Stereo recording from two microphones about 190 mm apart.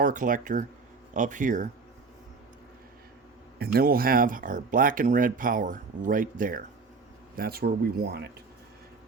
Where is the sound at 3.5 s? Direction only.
55° right (ahead or behind).